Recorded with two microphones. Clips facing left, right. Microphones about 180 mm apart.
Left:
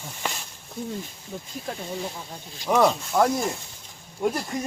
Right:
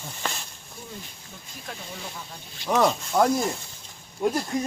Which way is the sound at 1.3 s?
40° left (ahead or behind).